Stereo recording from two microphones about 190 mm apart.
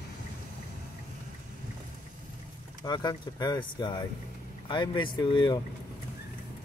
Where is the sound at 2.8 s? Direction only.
20° left (ahead or behind).